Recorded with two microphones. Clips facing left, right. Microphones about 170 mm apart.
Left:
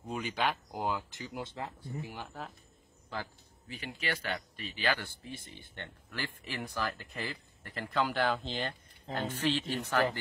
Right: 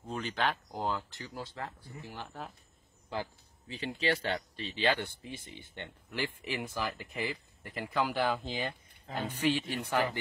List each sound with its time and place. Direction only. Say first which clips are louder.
0.0 s speech: even; 10° left (ahead or behind)
2.2 s speech: even; centre (ahead or behind)
3.1 s speech: right 3 dB; 20° right (ahead or behind)
7.9 s speech: even; 5° right (ahead or behind)